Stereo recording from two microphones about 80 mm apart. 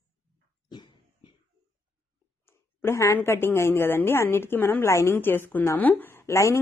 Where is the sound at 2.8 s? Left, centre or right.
Left.